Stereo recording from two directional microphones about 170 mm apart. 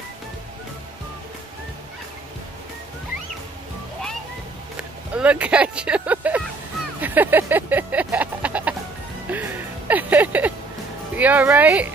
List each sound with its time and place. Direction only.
4.7 s speech: 5° right (ahead or behind)
7.0 s music: 10° right (ahead or behind)
11.1 s speech: 10° right (ahead or behind)